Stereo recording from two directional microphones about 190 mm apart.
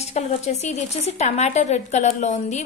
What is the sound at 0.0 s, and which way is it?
A woman's voice, 35° left (ahead or behind).